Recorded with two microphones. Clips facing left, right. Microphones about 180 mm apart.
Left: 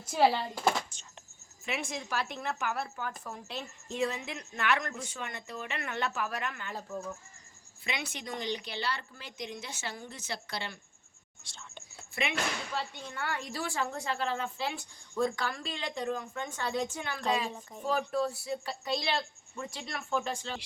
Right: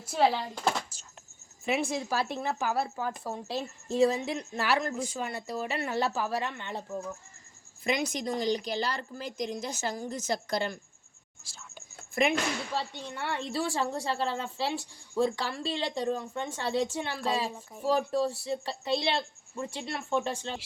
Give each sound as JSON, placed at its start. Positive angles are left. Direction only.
{"t": 0.1, "sound": "speech", "side_deg": 5}
{"t": 1.6, "sound": "speech", "side_deg": -35}
{"t": 7.9, "sound": "speech", "side_deg": -40}
{"t": 11.4, "sound": "whispering", "side_deg": -5}
{"t": 12.1, "sound": "speech", "side_deg": -45}
{"t": 12.7, "sound": "a woman's voice", "side_deg": -25}